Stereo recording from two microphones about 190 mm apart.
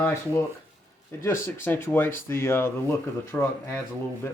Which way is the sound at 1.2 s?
15° left (ahead or behind).